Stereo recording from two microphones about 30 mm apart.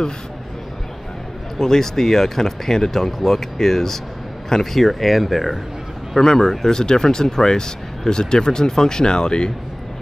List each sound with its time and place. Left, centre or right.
1.6 s speech: centre
4.7 s speech: centre
6.2 s speech: centre